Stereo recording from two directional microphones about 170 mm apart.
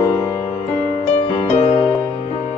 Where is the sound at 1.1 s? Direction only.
30° left (ahead or behind).